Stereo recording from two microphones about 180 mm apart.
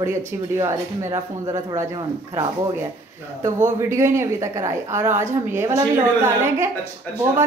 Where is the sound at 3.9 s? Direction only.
15° right (ahead or behind).